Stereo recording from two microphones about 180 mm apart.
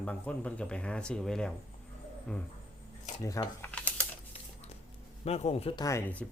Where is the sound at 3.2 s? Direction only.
20° left (ahead or behind).